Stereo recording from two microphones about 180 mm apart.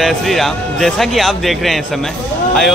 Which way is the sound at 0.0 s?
Centre (ahead or behind).